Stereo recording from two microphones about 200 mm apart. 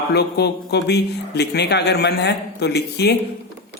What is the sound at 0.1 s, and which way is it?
Speech, 55° left (ahead or behind).